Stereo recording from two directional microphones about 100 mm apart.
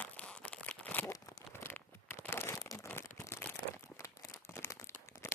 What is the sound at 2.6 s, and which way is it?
Crumpling, 30° left (ahead or behind).